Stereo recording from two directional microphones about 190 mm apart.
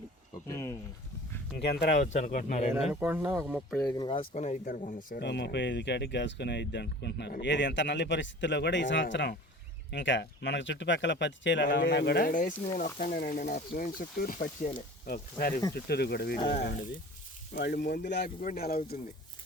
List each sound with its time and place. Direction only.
0.4 s a sound: 15° left (ahead or behind)
1.5 s speech: 60° left (ahead or behind)
2.1 s speech: 45° left (ahead or behind)
2.9 s speech: 10° right (ahead or behind)
3.9 s speech: 25° left (ahead or behind); by 5.2 s 45° left (ahead or behind)
5.2 s speech: 65° left (ahead or behind)
12.3 s speech: 45° left (ahead or behind)
16.4 s speech: 30° left (ahead or behind)
17.5 s speech: 50° left (ahead or behind)
18.0 s speech: 60° left (ahead or behind)